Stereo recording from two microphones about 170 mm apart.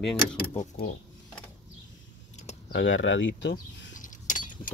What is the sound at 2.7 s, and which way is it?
Speech, 90° left.